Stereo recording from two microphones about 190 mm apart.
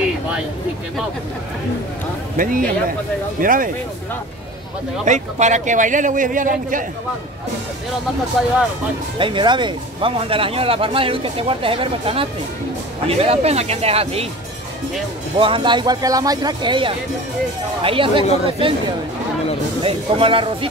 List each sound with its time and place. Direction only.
2.3 s a man's voice: 45° right (ahead or behind)
5.0 s a man's voice: 40° right (ahead or behind)
9.2 s a man's voice: 25° right (ahead or behind)
15.3 s speech: 25° right (ahead or behind)
19.8 s speech: 30° right (ahead or behind)